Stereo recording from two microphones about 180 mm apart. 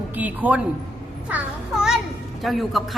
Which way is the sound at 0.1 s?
10° right (ahead or behind).